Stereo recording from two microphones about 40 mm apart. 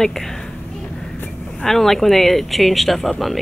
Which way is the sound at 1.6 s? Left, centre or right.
Centre.